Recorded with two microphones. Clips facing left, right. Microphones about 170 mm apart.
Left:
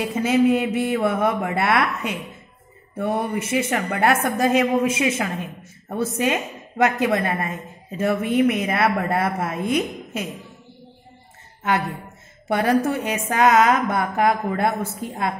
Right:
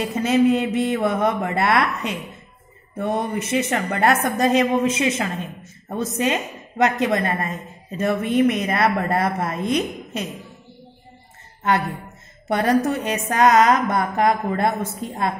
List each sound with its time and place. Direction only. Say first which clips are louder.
0.0 s speech: right 1 dB; 10° left (ahead or behind)
12.4 s a woman's voice: right 1 dB; 10° left (ahead or behind)